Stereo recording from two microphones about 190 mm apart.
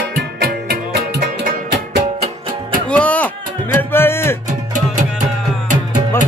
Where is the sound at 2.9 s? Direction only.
5° left (ahead or behind).